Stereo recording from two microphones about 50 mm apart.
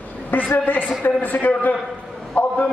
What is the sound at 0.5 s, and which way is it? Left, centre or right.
A man's voice, left.